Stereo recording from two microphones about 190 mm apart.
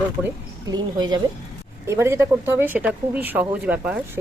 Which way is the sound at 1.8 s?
15° right (ahead or behind).